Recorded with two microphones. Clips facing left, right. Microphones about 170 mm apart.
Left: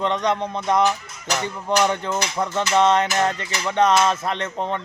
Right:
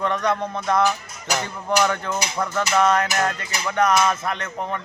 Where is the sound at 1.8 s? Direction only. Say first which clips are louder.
Left 2 dB; 20° left (ahead or behind).